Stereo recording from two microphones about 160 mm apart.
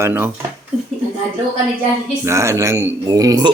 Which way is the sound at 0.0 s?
15° right (ahead or behind).